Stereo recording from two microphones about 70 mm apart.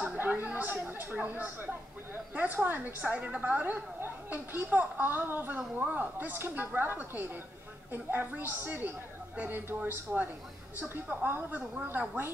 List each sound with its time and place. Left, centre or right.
0.2 s a woman's voice: right